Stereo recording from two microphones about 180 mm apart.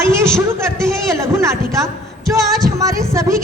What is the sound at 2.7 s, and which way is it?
Speech, 15° right (ahead or behind).